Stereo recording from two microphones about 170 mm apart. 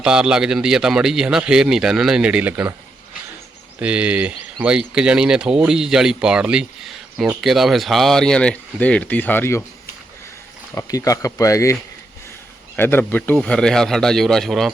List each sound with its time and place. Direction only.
0.0 s speech: 5° right (ahead or behind)
3.8 s speech: 5° right (ahead or behind); by 9.6 s 10° left (ahead or behind)
10.8 s speech: 20° left (ahead or behind); by 14.7 s centre (ahead or behind)